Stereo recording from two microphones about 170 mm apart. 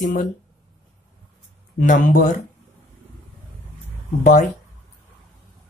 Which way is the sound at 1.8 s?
50° left (ahead or behind).